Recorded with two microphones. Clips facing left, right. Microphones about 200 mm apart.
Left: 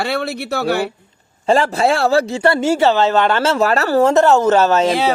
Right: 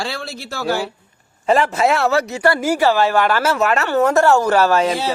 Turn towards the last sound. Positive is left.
turn(degrees=20)  # may be behind; listen again after turning